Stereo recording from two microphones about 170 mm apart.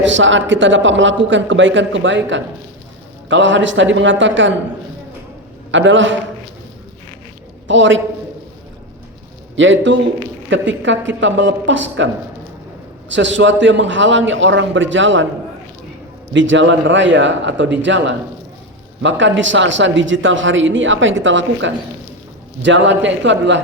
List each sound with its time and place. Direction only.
0.0 s speech: 90° right
5.7 s speech: 90° right
7.7 s speech: 90° right
9.6 s speech: 90° right
13.1 s speech: 90° right
16.3 s speech: 90° right